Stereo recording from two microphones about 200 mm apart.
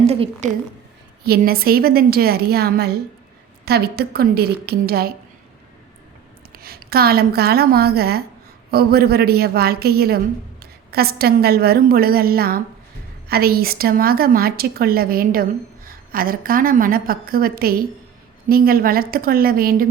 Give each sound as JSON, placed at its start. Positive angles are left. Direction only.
{"t": 0.1, "sound": "a woman's voice", "side_deg": -30}
{"t": 1.2, "sound": "a woman's voice", "side_deg": -50}
{"t": 6.5, "sound": "a woman's voice", "side_deg": -50}